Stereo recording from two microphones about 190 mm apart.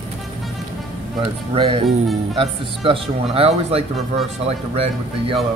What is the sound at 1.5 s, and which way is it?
Speech, 30° right (ahead or behind).